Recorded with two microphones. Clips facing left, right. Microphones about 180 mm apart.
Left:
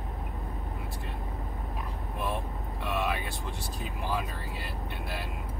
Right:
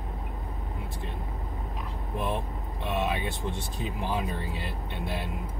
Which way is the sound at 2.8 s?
20° right (ahead or behind).